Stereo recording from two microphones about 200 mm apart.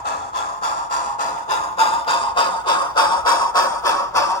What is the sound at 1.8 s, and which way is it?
Music, 30° left (ahead or behind).